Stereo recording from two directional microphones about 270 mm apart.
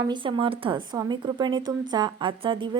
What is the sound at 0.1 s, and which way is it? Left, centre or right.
A woman's voice, centre.